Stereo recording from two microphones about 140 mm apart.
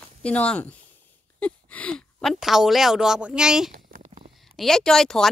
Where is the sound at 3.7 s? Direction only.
85° right; by 4.2 s 65° right (ahead or behind).